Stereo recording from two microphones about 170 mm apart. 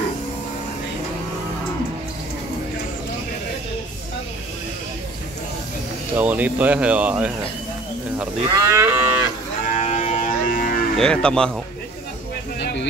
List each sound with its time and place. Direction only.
6.1 s speech: 10° right (ahead or behind)
8.5 s speech: 15° right (ahead or behind)
9.8 s a sound: 45° left (ahead or behind)
11.0 s speech: 5° left (ahead or behind)